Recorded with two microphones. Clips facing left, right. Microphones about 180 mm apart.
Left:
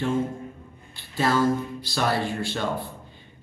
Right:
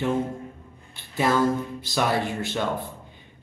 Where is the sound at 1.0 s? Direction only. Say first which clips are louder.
Right 1 dB; 20° right (ahead or behind).